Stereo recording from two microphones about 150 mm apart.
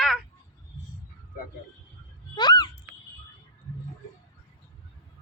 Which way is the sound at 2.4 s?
30° left (ahead or behind).